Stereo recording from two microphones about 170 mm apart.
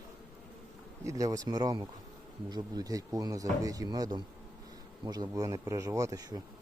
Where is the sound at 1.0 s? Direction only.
20° right (ahead or behind).